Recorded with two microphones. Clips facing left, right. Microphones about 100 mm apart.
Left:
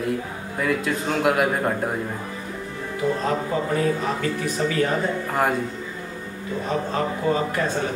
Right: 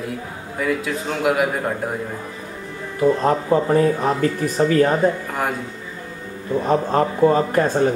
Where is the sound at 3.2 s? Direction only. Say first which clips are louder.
Right 6 dB; 40° right (ahead or behind).